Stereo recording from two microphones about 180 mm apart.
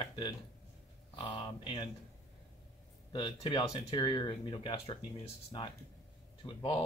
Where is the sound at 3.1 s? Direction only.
25° left (ahead or behind).